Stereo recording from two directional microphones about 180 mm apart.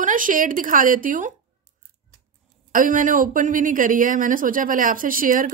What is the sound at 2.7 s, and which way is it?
A woman's voice, 50° right (ahead or behind).